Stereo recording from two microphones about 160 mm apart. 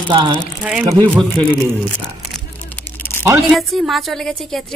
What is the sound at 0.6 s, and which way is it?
Speech, 10° right (ahead or behind).